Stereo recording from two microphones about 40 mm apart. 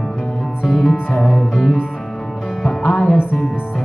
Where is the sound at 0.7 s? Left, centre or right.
Centre.